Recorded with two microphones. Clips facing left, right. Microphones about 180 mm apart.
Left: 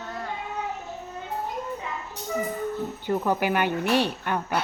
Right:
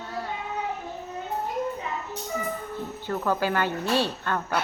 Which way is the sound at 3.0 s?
15° left (ahead or behind).